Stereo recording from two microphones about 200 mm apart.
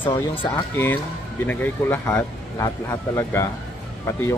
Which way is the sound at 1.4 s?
10° left (ahead or behind).